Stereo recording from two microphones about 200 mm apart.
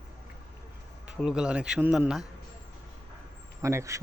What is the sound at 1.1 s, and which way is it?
A man's voice, 5° right (ahead or behind).